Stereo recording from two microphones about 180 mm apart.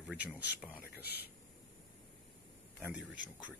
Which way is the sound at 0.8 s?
60° left (ahead or behind).